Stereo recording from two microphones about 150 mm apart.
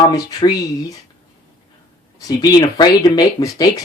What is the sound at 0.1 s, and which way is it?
Speech, 25° left (ahead or behind).